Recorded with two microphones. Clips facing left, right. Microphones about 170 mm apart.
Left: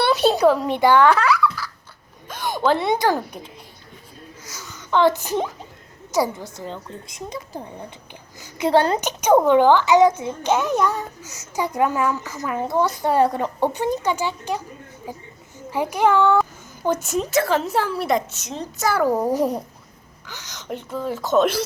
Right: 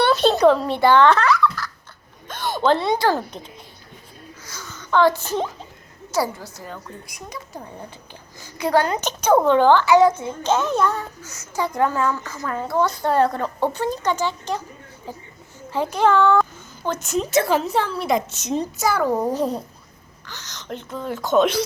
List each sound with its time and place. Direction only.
0.0 s giggle: 10° left (ahead or behind)
2.2 s a sound: 10° left (ahead or behind)
2.8 s a woman's voice: 20° left (ahead or behind)
4.4 s a woman's voice: 20° left (ahead or behind)
9.0 s a child's voice: 15° left (ahead or behind)
18.3 s a woman's voice: 20° right (ahead or behind)
18.8 s a child's voice: 5° left (ahead or behind)